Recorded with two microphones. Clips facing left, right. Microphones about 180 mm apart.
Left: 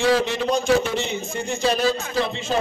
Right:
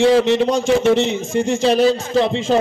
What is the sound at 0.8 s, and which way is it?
Speech, 85° right.